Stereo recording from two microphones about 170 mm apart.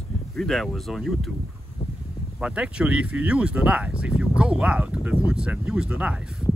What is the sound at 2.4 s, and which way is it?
Speech, 5° right (ahead or behind).